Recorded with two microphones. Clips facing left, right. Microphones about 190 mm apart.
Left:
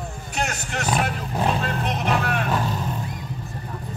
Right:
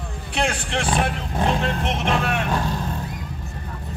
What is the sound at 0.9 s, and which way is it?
Speech, 5° left (ahead or behind).